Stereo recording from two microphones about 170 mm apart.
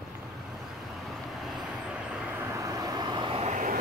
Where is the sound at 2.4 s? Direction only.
15° right (ahead or behind).